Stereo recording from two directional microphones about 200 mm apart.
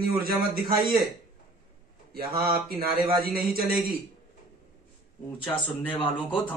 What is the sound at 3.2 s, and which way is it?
Speech, 50° right (ahead or behind).